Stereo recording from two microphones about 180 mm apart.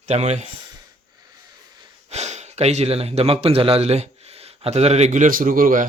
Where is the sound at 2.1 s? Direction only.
40° right (ahead or behind).